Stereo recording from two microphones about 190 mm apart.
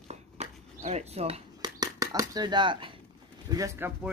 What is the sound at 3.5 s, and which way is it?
Speech, 20° right (ahead or behind).